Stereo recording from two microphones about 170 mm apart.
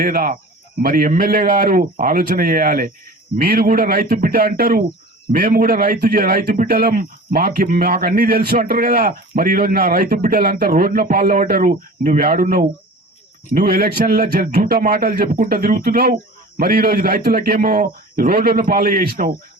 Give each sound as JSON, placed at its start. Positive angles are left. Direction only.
{"t": 0.0, "sound": "a man's voice", "side_deg": -55}